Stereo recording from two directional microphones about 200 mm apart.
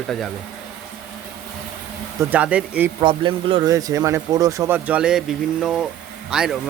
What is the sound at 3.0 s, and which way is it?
Speech, 25° right (ahead or behind).